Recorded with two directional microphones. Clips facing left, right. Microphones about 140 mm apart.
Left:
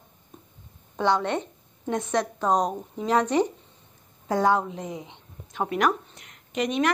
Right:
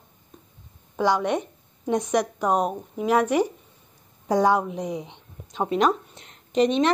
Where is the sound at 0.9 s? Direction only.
10° right (ahead or behind).